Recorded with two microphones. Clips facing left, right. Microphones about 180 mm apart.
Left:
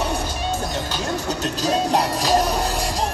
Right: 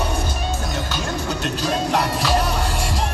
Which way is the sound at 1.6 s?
40° left (ahead or behind).